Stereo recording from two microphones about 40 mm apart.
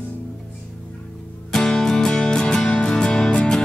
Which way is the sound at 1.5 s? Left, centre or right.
Centre.